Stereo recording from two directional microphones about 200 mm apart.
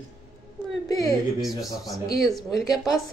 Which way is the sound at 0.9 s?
20° left (ahead or behind).